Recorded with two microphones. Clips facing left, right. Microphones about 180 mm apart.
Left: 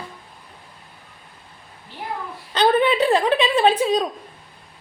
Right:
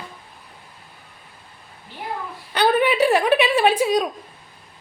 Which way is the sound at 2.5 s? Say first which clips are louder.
Left 1 dB; 10° right (ahead or behind).